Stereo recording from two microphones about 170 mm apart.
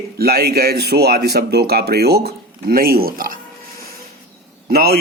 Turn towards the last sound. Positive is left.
turn(degrees=-65)  # may be behind; listen again after turning